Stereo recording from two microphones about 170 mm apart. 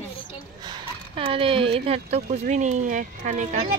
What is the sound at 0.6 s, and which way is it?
Speech, 30° right (ahead or behind).